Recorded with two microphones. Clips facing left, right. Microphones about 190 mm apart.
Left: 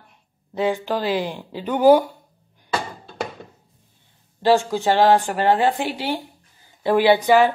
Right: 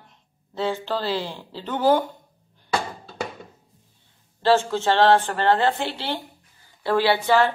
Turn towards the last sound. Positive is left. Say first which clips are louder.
# left 4 dB
turn(degrees=15)  # may be behind; listen again after turning